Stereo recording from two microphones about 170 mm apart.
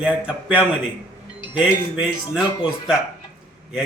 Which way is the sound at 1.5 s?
30° left (ahead or behind).